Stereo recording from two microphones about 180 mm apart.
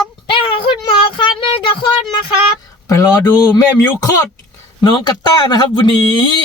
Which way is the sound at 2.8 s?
15° left (ahead or behind).